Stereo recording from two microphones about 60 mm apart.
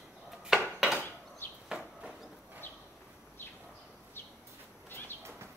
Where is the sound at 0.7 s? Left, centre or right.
Centre.